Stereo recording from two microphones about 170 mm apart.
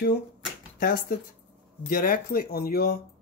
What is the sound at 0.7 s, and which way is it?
Speech, 65° left (ahead or behind).